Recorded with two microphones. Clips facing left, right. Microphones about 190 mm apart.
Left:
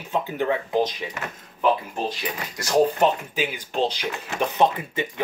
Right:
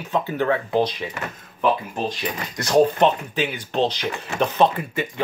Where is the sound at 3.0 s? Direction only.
10° left (ahead or behind).